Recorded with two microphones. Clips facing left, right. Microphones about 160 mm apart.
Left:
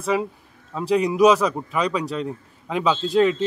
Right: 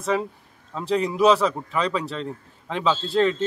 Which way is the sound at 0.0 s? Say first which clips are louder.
Left 1 dB; 5° left (ahead or behind).